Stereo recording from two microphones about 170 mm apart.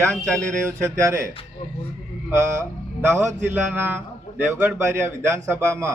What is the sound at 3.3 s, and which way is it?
A man's voice, 10° right (ahead or behind).